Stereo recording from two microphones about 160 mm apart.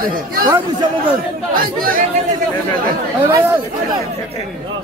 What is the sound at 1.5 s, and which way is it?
Speech, 60° right (ahead or behind).